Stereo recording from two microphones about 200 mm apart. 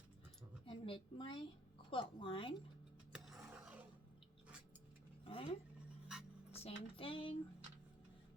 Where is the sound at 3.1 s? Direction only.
5° right (ahead or behind).